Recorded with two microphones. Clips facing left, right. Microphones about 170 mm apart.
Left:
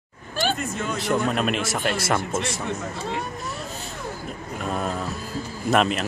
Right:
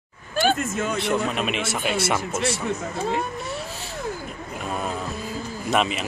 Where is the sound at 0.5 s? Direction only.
45° right (ahead or behind).